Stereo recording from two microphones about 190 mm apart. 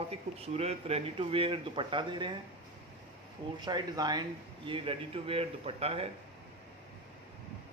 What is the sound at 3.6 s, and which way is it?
Speech, 20° right (ahead or behind).